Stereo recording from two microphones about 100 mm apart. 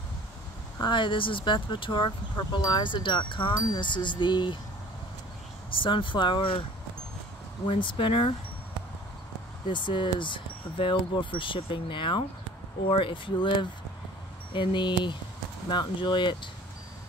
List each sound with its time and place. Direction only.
0.7 s speech: 50° left (ahead or behind)
5.7 s speech: 60° left (ahead or behind)
7.8 s speech: 60° left (ahead or behind)
9.7 s speech: 55° left (ahead or behind)